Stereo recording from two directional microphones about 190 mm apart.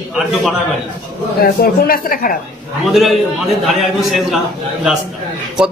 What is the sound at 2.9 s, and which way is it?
A man's voice, centre (ahead or behind).